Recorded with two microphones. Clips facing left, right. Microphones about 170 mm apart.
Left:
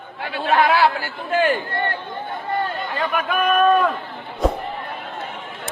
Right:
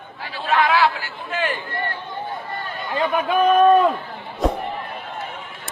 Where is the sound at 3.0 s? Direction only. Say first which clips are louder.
Right 4 dB; 25° right (ahead or behind).